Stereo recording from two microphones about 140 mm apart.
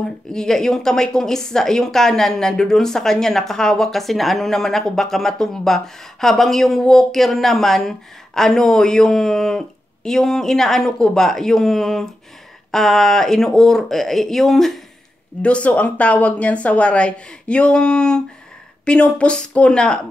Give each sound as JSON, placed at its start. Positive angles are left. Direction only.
{"t": 0.3, "sound": "a woman's voice", "side_deg": 5}